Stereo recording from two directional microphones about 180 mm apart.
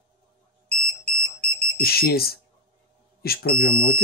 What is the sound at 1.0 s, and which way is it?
Alarm, 5° left (ahead or behind).